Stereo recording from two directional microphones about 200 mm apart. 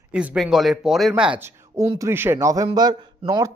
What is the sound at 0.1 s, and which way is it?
Speech, 5° right (ahead or behind).